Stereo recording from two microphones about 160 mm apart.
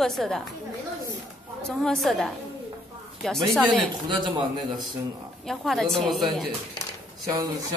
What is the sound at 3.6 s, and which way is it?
Speech, 25° right (ahead or behind).